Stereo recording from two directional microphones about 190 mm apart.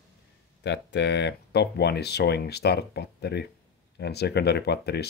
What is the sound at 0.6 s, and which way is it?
Speech, 65° left (ahead or behind).